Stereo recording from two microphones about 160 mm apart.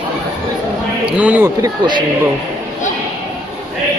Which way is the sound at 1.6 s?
30° right (ahead or behind).